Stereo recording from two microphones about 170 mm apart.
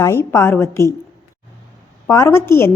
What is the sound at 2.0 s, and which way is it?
Speech, 15° left (ahead or behind).